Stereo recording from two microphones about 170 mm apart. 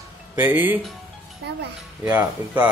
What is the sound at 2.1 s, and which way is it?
Speech, 10° right (ahead or behind).